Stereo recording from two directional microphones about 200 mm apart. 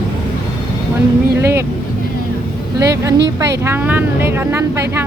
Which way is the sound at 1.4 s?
10° right (ahead or behind).